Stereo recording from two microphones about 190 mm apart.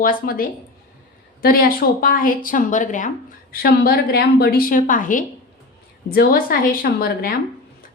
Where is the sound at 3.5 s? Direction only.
55° left (ahead or behind).